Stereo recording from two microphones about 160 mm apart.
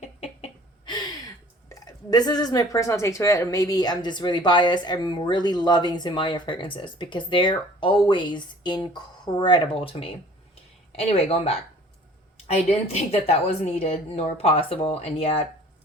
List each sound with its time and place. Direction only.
0.2 s chicken: 35° left (ahead or behind)
1.7 s a woman's voice: 25° left (ahead or behind)